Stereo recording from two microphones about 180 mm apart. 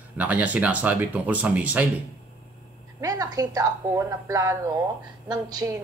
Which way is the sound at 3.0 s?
20° right (ahead or behind).